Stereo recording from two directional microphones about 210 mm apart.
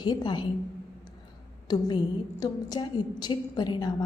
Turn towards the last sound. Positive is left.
turn(degrees=20)  # may be behind; listen again after turning